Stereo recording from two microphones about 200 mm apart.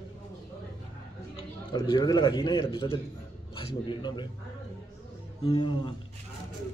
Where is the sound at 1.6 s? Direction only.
20° left (ahead or behind).